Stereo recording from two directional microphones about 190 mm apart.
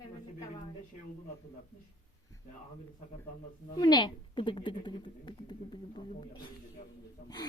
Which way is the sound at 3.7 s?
20° left (ahead or behind).